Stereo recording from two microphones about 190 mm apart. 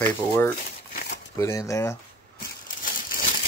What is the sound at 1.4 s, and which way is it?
Speech, 15° left (ahead or behind).